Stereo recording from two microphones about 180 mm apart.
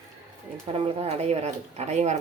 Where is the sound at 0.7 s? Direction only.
30° right (ahead or behind).